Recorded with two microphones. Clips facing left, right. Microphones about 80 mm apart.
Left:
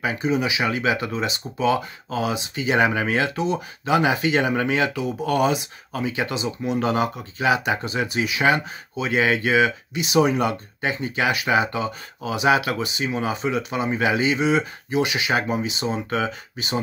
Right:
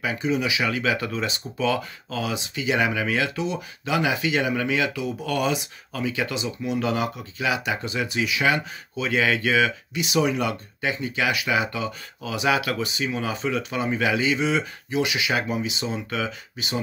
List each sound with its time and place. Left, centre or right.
0.0 s speech: left